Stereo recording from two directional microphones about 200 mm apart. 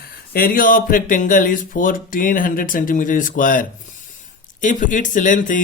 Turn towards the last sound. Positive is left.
turn(degrees=40)  # may be behind; listen again after turning